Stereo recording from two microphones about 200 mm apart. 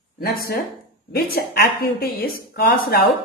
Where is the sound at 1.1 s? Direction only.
50° left (ahead or behind).